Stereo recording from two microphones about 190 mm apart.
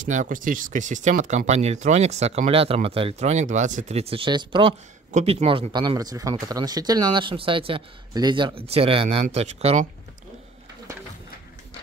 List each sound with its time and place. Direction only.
0.0 s speech: 45° right (ahead or behind)